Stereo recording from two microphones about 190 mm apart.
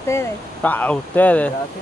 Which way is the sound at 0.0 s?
15° left (ahead or behind).